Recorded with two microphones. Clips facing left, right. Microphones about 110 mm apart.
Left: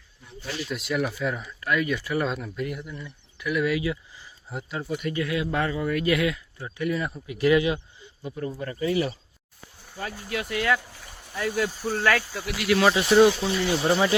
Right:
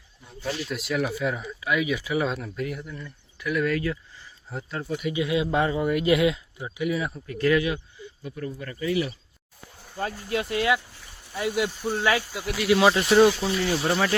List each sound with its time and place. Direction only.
0.7 s speech: centre (ahead or behind)
5.1 s speech: 20° right (ahead or behind); by 7.2 s 5° right (ahead or behind)
7.3 s speech: 15° left (ahead or behind); by 9.1 s 35° left (ahead or behind)
10.0 s speech: 30° right (ahead or behind)
11.3 s speech: 15° right (ahead or behind)
12.9 s speech: centre (ahead or behind)
13.8 s speech: 15° left (ahead or behind)